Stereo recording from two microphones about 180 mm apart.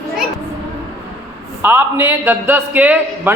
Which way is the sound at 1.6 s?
10° right (ahead or behind).